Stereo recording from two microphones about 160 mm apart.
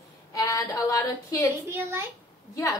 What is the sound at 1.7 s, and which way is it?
Speech, 15° right (ahead or behind).